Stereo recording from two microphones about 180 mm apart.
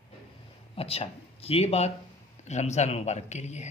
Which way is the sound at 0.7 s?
35° left (ahead or behind).